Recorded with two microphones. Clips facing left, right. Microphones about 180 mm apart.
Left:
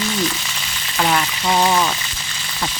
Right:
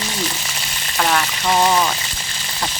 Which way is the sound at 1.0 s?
Centre (ahead or behind).